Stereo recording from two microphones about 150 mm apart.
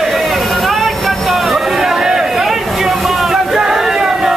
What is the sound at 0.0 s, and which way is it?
Vehicle, centre (ahead or behind).